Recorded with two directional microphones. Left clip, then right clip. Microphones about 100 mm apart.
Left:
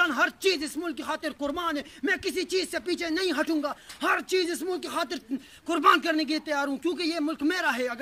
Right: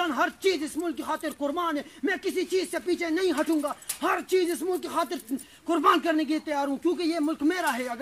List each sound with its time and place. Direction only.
0.0 s speech: 20° left (ahead or behind)